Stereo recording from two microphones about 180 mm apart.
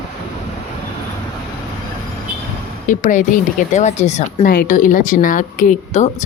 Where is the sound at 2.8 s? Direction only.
45° left (ahead or behind).